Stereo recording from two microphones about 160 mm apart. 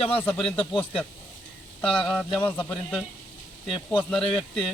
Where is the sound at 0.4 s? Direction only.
35° left (ahead or behind).